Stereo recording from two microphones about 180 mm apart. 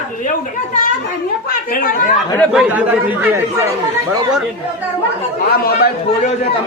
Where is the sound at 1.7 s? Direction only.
50° left (ahead or behind).